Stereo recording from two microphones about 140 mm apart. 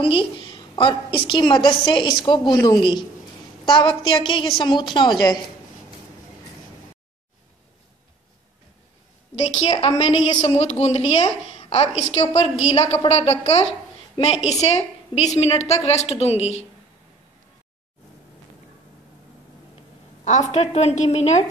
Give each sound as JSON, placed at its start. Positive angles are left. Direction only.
{"t": 0.0, "sound": "a woman's voice", "side_deg": 40}
{"t": 9.3, "sound": "a woman's voice", "side_deg": 50}
{"t": 20.2, "sound": "a woman's voice", "side_deg": 55}